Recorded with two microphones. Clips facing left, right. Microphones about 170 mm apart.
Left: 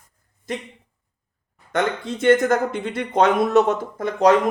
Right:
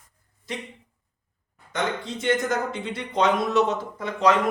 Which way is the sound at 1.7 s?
55° left (ahead or behind).